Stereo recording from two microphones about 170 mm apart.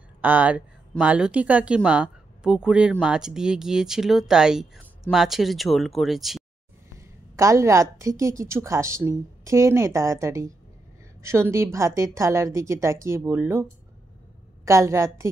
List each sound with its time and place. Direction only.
0.2 s speech: 10° right (ahead or behind)
7.0 s a woman's voice: 20° right (ahead or behind)